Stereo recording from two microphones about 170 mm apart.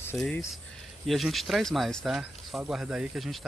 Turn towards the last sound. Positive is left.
turn(degrees=0)  # may be behind; listen again after turning